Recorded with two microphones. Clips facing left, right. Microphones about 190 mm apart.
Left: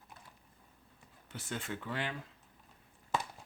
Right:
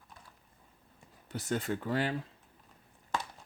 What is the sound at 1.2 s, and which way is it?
Speech, 40° right (ahead or behind).